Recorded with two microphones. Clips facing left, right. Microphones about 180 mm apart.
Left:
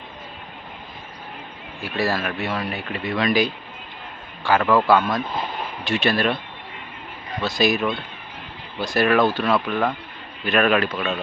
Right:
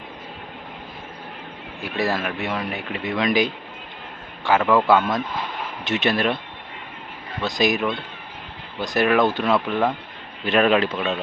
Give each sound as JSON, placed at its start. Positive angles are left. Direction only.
{"t": 1.8, "sound": "speech", "side_deg": -20}
{"t": 4.6, "sound": "speech", "side_deg": 0}
{"t": 5.8, "sound": "speech", "side_deg": -20}
{"t": 7.4, "sound": "speech", "side_deg": -20}